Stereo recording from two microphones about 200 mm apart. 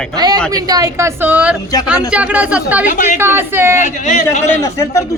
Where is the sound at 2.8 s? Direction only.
40° left (ahead or behind).